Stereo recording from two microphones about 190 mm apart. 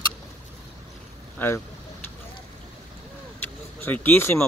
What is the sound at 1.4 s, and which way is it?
Speech, 10° left (ahead or behind).